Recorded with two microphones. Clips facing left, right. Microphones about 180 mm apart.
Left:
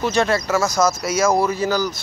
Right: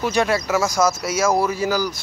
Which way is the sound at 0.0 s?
10° right (ahead or behind).